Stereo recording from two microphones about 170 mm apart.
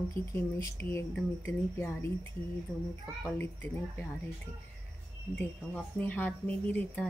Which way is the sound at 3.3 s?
10° left (ahead or behind).